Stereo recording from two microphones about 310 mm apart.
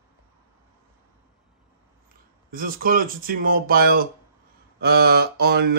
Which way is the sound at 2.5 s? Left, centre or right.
Right.